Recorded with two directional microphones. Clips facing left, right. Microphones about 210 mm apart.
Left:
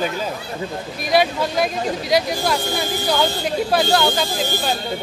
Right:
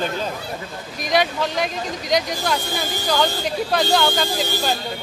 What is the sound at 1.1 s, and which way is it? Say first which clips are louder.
Speech: left 2 dB; 5° left (ahead or behind).